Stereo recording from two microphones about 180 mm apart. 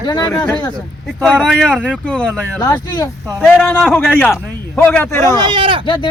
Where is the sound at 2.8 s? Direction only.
25° left (ahead or behind).